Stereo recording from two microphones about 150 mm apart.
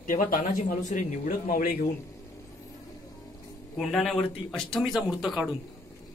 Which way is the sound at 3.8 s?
5° left (ahead or behind).